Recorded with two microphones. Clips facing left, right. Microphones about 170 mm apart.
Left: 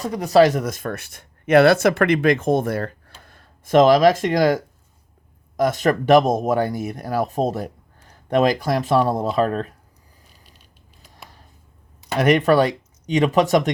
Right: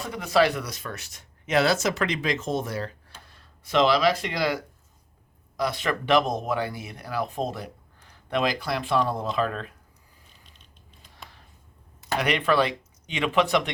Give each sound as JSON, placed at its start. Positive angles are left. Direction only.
{"t": 0.0, "sound": "speech", "side_deg": 40}
{"t": 10.2, "sound": "a sound", "side_deg": 5}
{"t": 12.1, "sound": "speech", "side_deg": 45}